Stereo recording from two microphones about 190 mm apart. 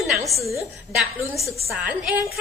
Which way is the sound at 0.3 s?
15° left (ahead or behind).